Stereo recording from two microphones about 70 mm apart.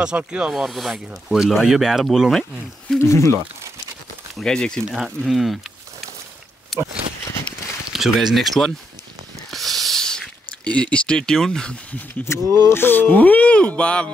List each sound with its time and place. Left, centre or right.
0.0 s speech: centre
3.0 s speech: left
4.4 s speech: centre
4.9 s speech: centre
6.7 s a sound: centre
7.9 s speech: centre
9.5 s a sound: centre
12.3 s speech: left; by 14.1 s centre